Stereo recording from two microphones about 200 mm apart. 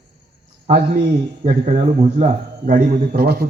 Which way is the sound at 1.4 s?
35° right (ahead or behind).